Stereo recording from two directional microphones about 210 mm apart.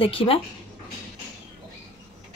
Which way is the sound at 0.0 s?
25° left (ahead or behind).